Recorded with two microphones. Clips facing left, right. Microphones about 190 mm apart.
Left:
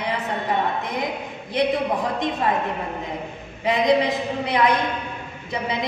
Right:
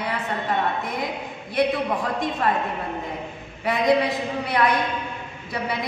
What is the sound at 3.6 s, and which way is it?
A woman's voice, 20° left (ahead or behind).